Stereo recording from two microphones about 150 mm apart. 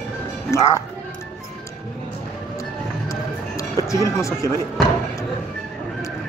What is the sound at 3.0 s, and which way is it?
Music, 20° left (ahead or behind).